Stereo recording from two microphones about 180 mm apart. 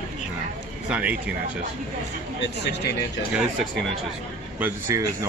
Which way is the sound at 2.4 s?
75° left (ahead or behind).